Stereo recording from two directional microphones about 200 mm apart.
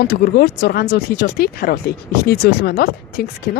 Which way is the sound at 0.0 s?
50° left (ahead or behind).